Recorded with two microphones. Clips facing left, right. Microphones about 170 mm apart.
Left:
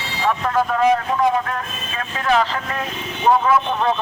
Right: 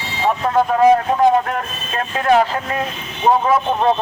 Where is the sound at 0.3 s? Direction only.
30° right (ahead or behind).